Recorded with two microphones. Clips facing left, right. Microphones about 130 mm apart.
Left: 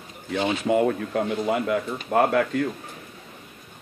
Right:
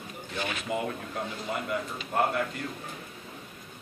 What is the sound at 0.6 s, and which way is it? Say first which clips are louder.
Speech: left 11 dB; 80° left.